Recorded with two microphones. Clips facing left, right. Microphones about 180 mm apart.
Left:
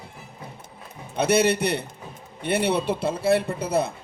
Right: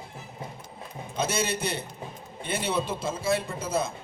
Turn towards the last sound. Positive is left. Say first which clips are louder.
# left 5 dB
turn(degrees=65)  # may be behind; listen again after turning